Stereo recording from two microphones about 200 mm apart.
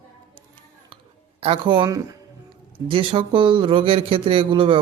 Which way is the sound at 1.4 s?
25° right (ahead or behind).